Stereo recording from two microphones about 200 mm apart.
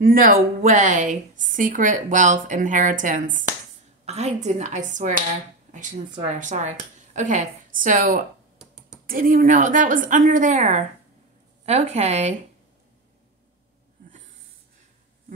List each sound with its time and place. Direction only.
0.0 s a woman's voice: 45° right (ahead or behind)
8.5 s computer keyboard: 5° right (ahead or behind)
9.0 s a woman's voice: 45° right (ahead or behind)